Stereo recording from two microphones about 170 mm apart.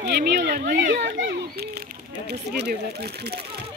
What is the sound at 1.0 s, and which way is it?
Children playing, 85° right.